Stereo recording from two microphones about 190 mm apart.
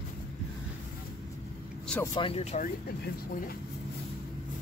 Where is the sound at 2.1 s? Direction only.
30° left (ahead or behind).